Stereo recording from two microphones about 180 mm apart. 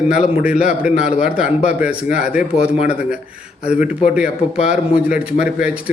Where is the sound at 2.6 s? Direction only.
35° left (ahead or behind).